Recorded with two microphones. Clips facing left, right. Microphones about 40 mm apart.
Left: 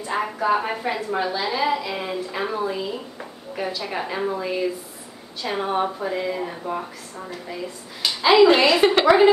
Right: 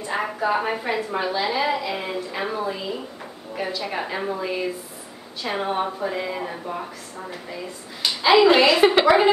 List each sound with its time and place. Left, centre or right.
0.0 s a woman's voice: centre
8.0 s speech: centre